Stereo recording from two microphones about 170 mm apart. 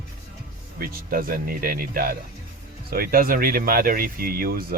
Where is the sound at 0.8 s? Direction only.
60° right (ahead or behind).